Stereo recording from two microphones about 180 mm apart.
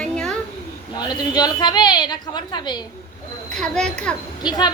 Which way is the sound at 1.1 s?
20° left (ahead or behind).